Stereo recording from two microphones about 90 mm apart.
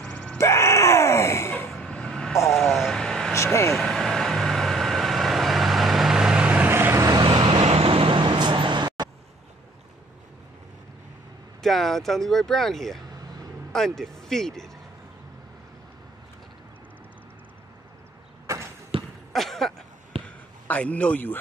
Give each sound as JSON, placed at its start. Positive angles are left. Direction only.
{"t": 0.0, "sound": "groan", "side_deg": 10}
{"t": 0.4, "sound": "groan", "side_deg": 30}
{"t": 1.7, "sound": "vehicle", "side_deg": 5}
{"t": 7.2, "sound": "vehicle", "side_deg": -55}
{"t": 7.6, "sound": "vehicle", "side_deg": -90}
{"t": 11.6, "sound": "speech", "side_deg": 5}
{"t": 18.9, "sound": "basketball bounce", "side_deg": -90}
{"t": 19.3, "sound": "a sound", "side_deg": 5}
{"t": 20.1, "sound": "basketball bounce", "side_deg": -90}
{"t": 20.6, "sound": "a man's voice", "side_deg": 15}